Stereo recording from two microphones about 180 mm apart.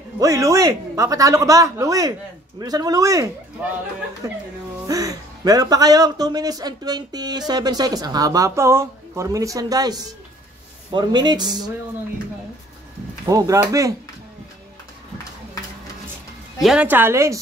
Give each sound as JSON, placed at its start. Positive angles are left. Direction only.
{"t": 0.2, "sound": "a woman's voice", "side_deg": -15}
{"t": 13.3, "sound": "speech", "side_deg": -20}
{"t": 16.6, "sound": "a woman's voice", "side_deg": -10}